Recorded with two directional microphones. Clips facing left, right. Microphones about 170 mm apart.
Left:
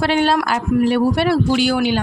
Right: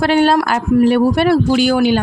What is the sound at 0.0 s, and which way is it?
Speech, 45° right (ahead or behind).